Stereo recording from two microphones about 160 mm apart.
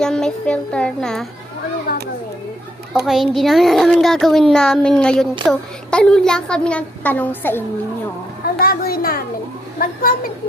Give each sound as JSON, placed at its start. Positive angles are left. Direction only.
{"t": 0.0, "sound": "a child's voice", "side_deg": 5}
{"t": 2.9, "sound": "a child's voice", "side_deg": 0}
{"t": 8.5, "sound": "a woman's voice", "side_deg": 65}